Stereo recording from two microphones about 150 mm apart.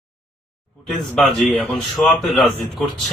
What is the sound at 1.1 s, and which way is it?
Speech, centre (ahead or behind).